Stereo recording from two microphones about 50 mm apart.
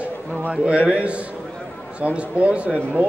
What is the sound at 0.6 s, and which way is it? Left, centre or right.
A man's voice, right.